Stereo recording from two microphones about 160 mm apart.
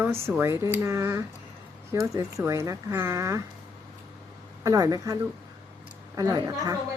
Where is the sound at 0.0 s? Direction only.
15° right (ahead or behind).